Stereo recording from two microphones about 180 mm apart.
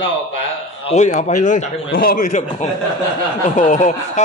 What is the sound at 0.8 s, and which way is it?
A man's voice, 40° left (ahead or behind).